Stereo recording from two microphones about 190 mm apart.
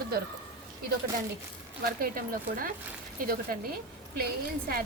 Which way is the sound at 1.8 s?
50° right (ahead or behind).